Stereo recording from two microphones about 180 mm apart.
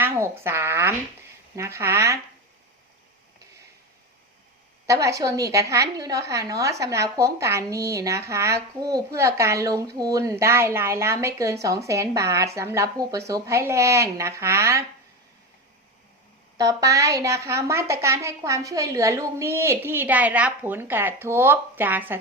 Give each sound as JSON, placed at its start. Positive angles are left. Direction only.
{"t": 0.0, "sound": "a woman's voice", "side_deg": -15}
{"t": 4.9, "sound": "a woman's voice", "side_deg": -15}
{"t": 16.6, "sound": "a woman's voice", "side_deg": -20}